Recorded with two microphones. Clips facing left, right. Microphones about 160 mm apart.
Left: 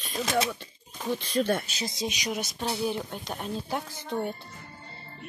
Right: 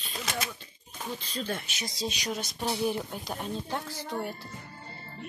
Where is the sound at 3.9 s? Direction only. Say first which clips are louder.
Left 3 dB; 20° left (ahead or behind).